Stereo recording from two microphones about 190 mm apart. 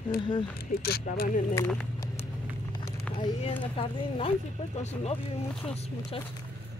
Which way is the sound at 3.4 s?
30° left (ahead or behind).